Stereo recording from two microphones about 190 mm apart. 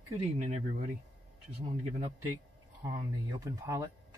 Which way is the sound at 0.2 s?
35° right (ahead or behind).